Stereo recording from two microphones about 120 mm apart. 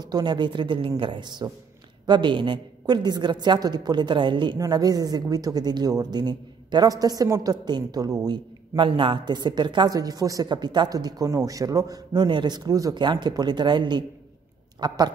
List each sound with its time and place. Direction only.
0.0 s a woman's voice: 35° right (ahead or behind)